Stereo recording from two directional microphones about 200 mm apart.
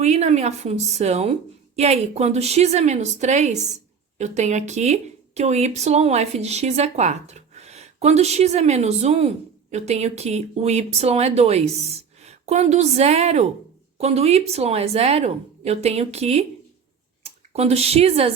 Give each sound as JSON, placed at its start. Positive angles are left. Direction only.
{"t": 0.0, "sound": "speech", "side_deg": -35}